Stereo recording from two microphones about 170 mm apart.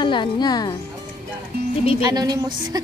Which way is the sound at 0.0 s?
30° left (ahead or behind).